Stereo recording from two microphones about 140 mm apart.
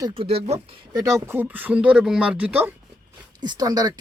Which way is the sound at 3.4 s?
30° right (ahead or behind).